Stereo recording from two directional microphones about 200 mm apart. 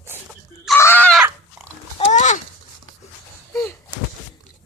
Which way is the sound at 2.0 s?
35° left (ahead or behind).